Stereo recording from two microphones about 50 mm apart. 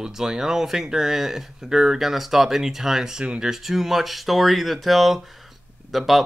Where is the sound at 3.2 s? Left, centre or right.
Right.